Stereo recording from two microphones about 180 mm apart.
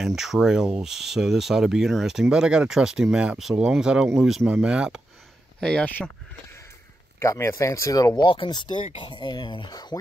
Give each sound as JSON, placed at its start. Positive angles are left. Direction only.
{"t": 0.0, "sound": "speech", "side_deg": 0}
{"t": 7.2, "sound": "speech", "side_deg": 15}